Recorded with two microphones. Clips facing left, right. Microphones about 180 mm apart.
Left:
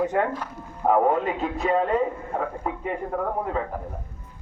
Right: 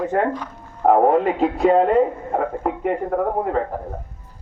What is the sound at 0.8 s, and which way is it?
Speech, 65° right (ahead or behind).